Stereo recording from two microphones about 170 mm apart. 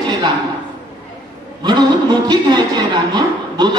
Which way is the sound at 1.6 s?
25° right (ahead or behind).